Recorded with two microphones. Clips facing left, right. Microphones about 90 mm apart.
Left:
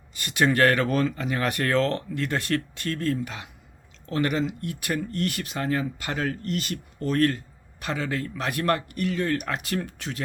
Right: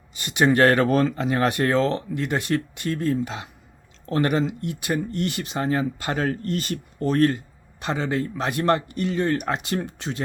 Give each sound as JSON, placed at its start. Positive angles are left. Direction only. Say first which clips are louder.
{"t": 0.1, "sound": "speech", "louder": "right 3 dB", "side_deg": -20}
{"t": 4.6, "sound": "speech", "louder": "right 3 dB", "side_deg": -20}